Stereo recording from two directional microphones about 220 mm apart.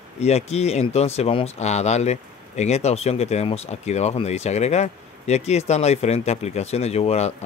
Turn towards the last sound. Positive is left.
turn(degrees=30)  # may be behind; listen again after turning